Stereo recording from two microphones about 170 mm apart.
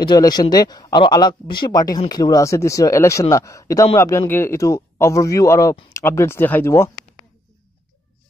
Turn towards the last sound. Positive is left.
turn(degrees=15)  # may be behind; listen again after turning